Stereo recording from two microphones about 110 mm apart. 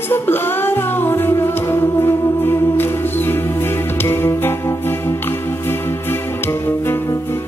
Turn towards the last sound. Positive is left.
turn(degrees=20)  # may be behind; listen again after turning